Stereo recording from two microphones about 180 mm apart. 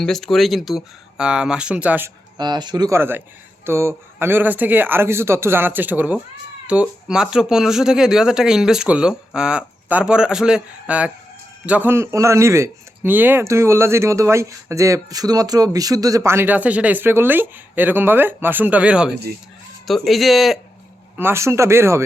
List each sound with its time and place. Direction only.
0.0 s speech: 5° left (ahead or behind)
2.4 s speech: 25° right (ahead or behind); by 20.6 s centre (ahead or behind)
21.2 s speech: 15° right (ahead or behind)